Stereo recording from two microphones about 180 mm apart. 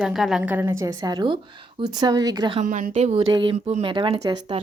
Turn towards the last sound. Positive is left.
turn(degrees=-30)  # may be behind; listen again after turning